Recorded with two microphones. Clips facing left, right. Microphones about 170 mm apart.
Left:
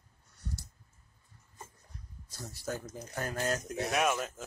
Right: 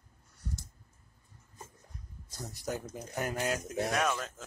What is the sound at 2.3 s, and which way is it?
Speech, 20° right (ahead or behind).